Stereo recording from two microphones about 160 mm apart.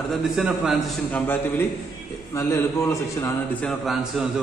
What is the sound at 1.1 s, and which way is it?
A man's voice, 15° left (ahead or behind).